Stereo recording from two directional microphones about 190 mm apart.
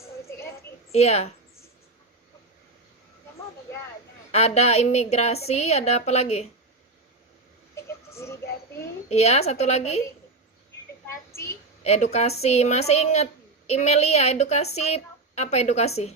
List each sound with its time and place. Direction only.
0.3 s a sound: 15° left (ahead or behind)
0.9 s a woman's voice: 35° left (ahead or behind)
4.3 s a woman's voice: 35° left (ahead or behind)
7.8 s child singing: 15° left (ahead or behind)
9.0 s a woman's voice: 35° left (ahead or behind)
11.8 s a woman's voice: 35° left (ahead or behind)